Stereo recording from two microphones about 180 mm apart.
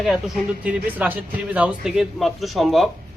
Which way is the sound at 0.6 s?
10° right (ahead or behind).